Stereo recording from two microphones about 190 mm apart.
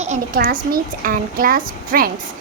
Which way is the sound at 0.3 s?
50° right (ahead or behind).